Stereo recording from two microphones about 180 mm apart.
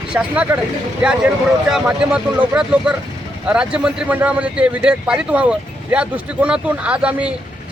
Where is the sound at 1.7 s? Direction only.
5° right (ahead or behind).